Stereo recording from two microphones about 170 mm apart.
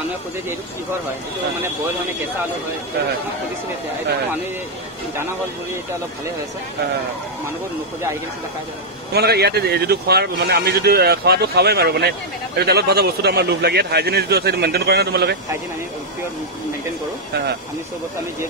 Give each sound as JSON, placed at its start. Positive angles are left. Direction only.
{"t": 9.1, "sound": "speech", "side_deg": -70}